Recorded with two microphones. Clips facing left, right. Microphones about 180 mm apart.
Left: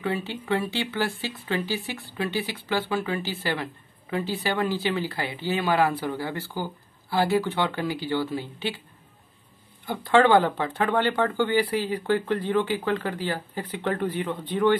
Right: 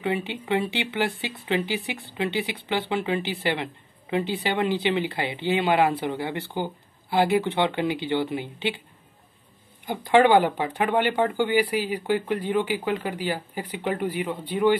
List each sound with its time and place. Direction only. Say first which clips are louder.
0.0 s speech: right 2 dB; 20° right (ahead or behind)
9.8 s speech: right 1 dB; 15° right (ahead or behind)